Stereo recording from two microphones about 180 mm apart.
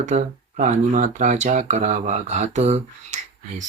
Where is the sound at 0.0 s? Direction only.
45° right (ahead or behind).